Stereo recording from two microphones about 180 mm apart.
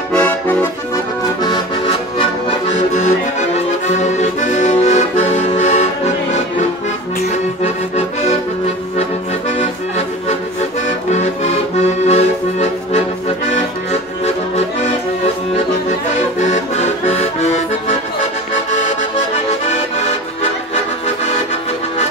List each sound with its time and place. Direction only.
0.1 s accordion: 5° left (ahead or behind)
1.4 s music: 25° left (ahead or behind)
2.9 s accordion: 40° left (ahead or behind)
7.6 s accordion: 35° left (ahead or behind)
9.6 s accordion: 35° left (ahead or behind)
16.3 s accordion: 40° left (ahead or behind)